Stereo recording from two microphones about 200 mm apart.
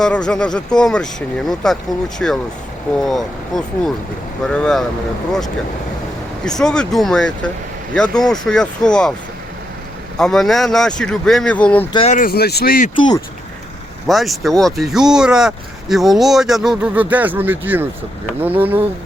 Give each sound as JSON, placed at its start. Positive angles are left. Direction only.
{"t": 0.0, "sound": "speech", "side_deg": 5}
{"t": 6.4, "sound": "speech", "side_deg": 5}
{"t": 10.2, "sound": "speech", "side_deg": 0}
{"t": 11.9, "sound": "speech", "side_deg": 35}
{"t": 14.1, "sound": "speech", "side_deg": 0}